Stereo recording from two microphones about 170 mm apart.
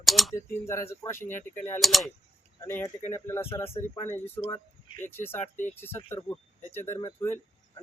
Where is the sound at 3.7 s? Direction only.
35° left (ahead or behind).